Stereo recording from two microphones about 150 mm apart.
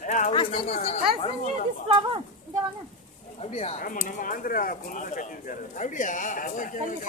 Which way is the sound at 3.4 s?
45° left (ahead or behind).